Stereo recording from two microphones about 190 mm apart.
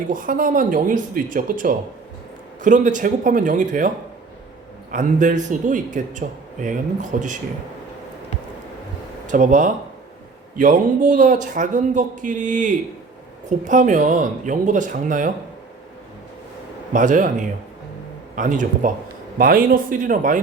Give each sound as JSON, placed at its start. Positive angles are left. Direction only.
{"t": 0.1, "sound": "speech", "side_deg": -45}
{"t": 9.2, "sound": "speech", "side_deg": -40}
{"t": 16.9, "sound": "speech", "side_deg": -45}
{"t": 18.3, "sound": "speech", "side_deg": -40}